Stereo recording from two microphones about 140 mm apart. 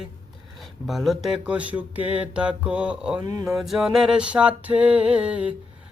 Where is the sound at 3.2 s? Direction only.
25° right (ahead or behind).